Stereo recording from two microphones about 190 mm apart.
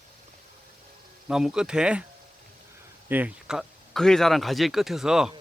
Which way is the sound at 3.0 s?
10° right (ahead or behind).